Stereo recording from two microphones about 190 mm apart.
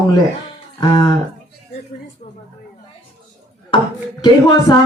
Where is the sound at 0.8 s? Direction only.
20° left (ahead or behind).